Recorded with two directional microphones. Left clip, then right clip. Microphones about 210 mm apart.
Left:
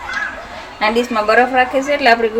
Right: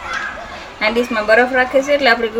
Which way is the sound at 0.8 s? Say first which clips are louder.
Left 1 dB; 20° left (ahead or behind).